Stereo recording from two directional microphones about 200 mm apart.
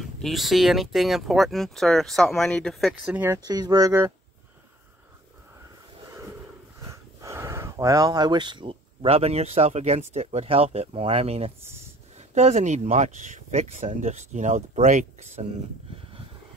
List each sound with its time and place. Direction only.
0.0 s speech: centre (ahead or behind)
3.4 s speech: 20° right (ahead or behind)
6.8 s speech: 15° right (ahead or behind)